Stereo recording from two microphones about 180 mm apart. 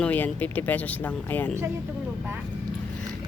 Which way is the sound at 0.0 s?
10° left (ahead or behind).